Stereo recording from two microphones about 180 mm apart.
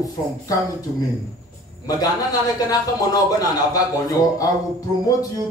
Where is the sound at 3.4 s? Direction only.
20° left (ahead or behind).